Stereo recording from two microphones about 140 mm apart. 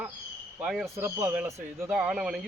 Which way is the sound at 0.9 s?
15° right (ahead or behind).